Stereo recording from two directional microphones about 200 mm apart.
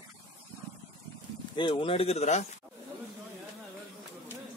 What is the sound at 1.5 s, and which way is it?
Speech, 25° left (ahead or behind).